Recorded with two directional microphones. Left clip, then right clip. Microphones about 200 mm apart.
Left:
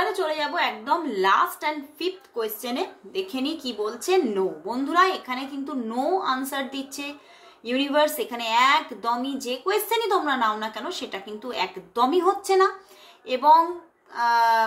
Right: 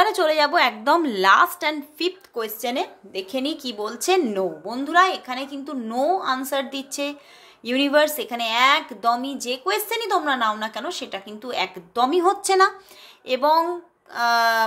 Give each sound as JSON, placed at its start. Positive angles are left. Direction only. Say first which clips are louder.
{"t": 0.0, "sound": "a woman's voice", "louder": "right 7 dB", "side_deg": -60}
{"t": 1.1, "sound": "a woman's voice", "louder": "right 3 dB", "side_deg": -40}